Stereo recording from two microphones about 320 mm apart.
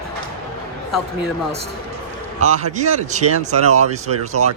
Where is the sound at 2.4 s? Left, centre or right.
Right.